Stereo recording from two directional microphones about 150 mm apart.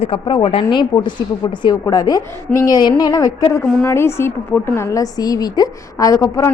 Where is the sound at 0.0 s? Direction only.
35° left (ahead or behind).